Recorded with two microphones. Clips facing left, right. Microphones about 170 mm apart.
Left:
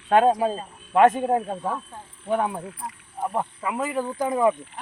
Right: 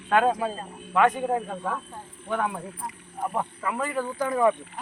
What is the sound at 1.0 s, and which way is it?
Speech, 45° left (ahead or behind).